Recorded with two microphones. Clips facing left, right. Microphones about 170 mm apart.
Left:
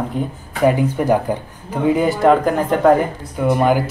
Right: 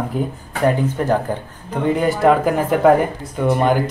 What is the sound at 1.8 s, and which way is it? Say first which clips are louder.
Speech: left 1 dB; centre (ahead or behind).